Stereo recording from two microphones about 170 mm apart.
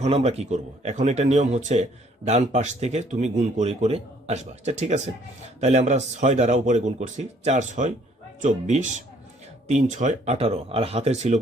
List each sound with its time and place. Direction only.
0.0 s speech: 35° right (ahead or behind)